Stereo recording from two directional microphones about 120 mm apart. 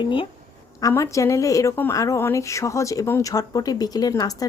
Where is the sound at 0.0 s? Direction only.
45° left (ahead or behind).